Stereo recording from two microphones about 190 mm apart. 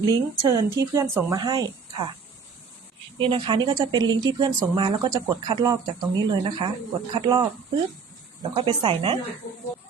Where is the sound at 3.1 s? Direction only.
25° right (ahead or behind).